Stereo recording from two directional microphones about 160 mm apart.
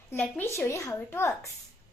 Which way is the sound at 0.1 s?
15° left (ahead or behind).